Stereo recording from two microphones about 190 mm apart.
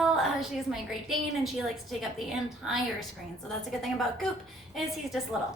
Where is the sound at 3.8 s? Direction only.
Centre (ahead or behind).